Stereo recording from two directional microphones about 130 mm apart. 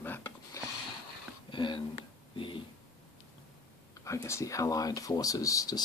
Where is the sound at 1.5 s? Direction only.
40° left (ahead or behind).